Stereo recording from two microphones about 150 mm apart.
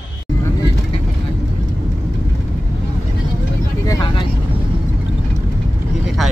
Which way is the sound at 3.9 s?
25° left (ahead or behind).